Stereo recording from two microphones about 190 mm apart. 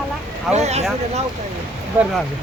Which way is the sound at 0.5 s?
35° right (ahead or behind).